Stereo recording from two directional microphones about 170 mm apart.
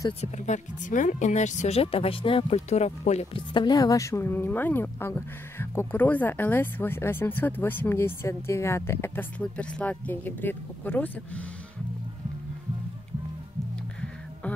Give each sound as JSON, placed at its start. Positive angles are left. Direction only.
{"t": 0.2, "sound": "speech", "side_deg": 45}
{"t": 3.5, "sound": "speech", "side_deg": 25}